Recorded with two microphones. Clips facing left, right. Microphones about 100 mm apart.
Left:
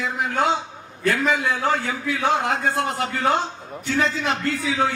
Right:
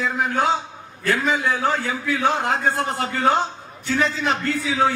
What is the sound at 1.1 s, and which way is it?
A man's voice, 35° right (ahead or behind).